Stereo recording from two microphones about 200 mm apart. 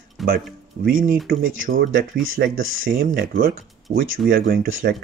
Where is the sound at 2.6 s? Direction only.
85° right.